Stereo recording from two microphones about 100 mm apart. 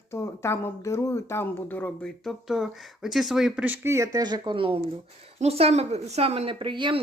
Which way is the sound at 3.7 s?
25° right (ahead or behind).